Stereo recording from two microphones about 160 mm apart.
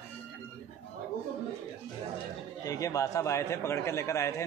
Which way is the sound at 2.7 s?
20° left (ahead or behind).